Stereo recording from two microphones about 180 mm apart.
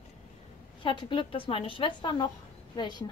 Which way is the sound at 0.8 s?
25° left (ahead or behind).